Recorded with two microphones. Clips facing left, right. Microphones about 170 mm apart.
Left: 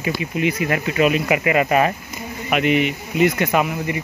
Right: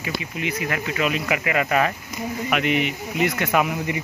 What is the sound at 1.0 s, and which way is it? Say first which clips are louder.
Speech: left 5 dB; 15° left (ahead or behind).